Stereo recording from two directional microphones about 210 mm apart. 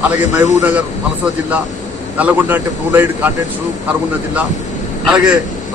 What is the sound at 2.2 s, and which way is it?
A man's voice, 10° right (ahead or behind).